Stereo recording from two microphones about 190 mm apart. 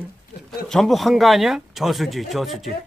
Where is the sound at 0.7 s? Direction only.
Centre (ahead or behind).